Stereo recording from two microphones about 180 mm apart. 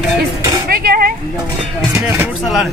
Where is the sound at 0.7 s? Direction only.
55° right (ahead or behind).